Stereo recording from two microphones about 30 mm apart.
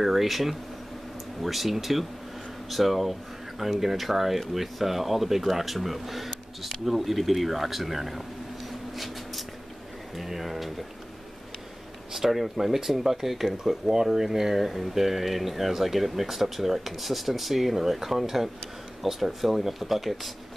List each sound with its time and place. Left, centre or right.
0.0 s speech: centre
8.9 s a sound: centre
10.1 s speech: centre
12.1 s speech: centre
13.7 s speech: centre